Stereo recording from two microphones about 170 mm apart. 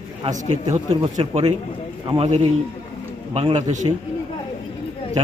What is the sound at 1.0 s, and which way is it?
A man's voice, 30° right (ahead or behind).